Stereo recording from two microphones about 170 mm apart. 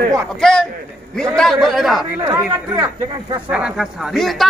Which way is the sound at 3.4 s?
5° right (ahead or behind).